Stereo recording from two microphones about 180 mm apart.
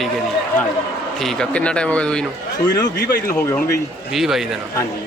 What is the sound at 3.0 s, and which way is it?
Speech, 65° left (ahead or behind).